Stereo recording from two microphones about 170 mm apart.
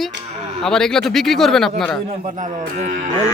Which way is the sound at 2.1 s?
50° right (ahead or behind).